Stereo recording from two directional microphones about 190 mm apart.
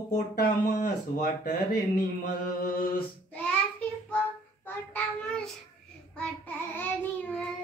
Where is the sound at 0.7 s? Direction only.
50° left (ahead or behind).